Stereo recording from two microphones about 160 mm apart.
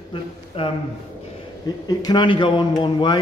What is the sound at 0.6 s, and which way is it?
Speech, 35° left (ahead or behind).